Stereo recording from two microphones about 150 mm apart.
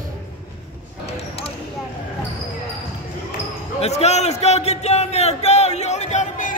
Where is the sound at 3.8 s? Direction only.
45° left (ahead or behind).